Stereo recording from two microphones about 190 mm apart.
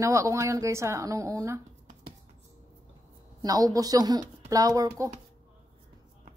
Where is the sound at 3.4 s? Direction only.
20° right (ahead or behind).